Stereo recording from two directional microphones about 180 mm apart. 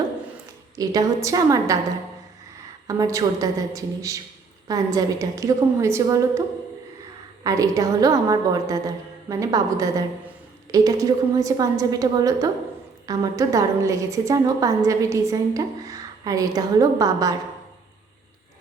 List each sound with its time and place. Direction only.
0.8 s a woman's voice: 20° right (ahead or behind)
2.8 s a woman's voice: 20° right (ahead or behind)
7.4 s a woman's voice: 20° right (ahead or behind)